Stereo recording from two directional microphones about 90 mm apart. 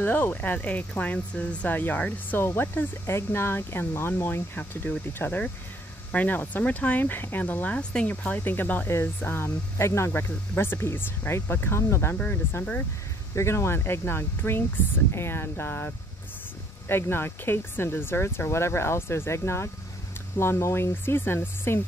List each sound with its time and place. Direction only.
0.0 s speech: 20° left (ahead or behind)
13.3 s speech: 35° left (ahead or behind)